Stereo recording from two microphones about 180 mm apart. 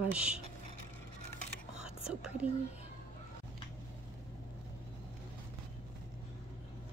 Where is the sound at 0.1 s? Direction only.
5° right (ahead or behind).